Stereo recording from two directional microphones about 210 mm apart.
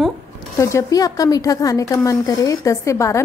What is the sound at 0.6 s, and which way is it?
A woman's voice, 15° left (ahead or behind).